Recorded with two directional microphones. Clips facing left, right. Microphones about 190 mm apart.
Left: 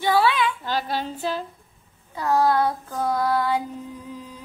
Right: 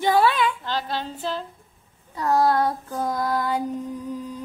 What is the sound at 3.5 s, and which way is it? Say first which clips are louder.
Music: right 3 dB; 45° right (ahead or behind).